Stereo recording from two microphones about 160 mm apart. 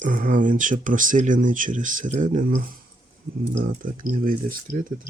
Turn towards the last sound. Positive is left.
turn(degrees=-60)  # may be behind; listen again after turning